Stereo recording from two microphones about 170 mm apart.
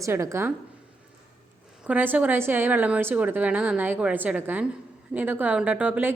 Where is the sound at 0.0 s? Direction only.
15° right (ahead or behind).